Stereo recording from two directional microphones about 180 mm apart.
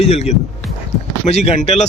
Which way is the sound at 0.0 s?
35° left (ahead or behind).